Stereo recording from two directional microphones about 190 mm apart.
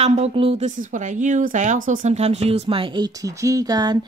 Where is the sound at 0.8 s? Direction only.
40° right (ahead or behind).